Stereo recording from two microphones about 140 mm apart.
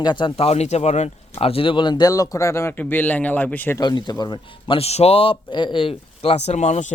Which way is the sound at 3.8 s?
30° left (ahead or behind).